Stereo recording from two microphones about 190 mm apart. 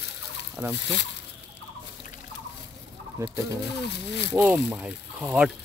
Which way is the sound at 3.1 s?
15° right (ahead or behind).